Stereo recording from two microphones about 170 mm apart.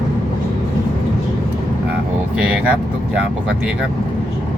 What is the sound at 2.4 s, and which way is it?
Vehicle, 5° right (ahead or behind).